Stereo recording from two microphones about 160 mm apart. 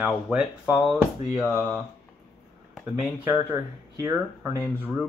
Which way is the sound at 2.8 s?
Centre (ahead or behind).